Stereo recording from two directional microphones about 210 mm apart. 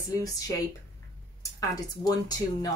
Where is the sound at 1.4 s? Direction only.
15° left (ahead or behind).